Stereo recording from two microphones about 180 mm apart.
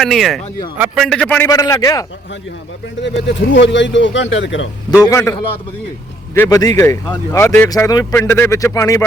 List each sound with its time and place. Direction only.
0.0 s a man's voice: centre (ahead or behind)
1.5 s a man's voice: 20° left (ahead or behind)
3.0 s a man's voice: 80° left
5.0 s speech: 20° left (ahead or behind)
6.3 s speech: 15° left (ahead or behind)